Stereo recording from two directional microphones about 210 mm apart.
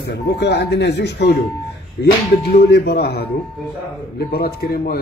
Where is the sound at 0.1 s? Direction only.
55° left (ahead or behind).